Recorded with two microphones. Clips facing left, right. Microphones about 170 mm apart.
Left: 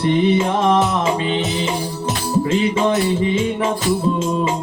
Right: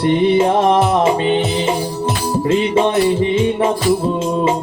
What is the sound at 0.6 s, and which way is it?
Music, 35° right (ahead or behind).